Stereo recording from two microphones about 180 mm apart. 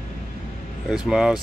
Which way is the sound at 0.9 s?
5° right (ahead or behind).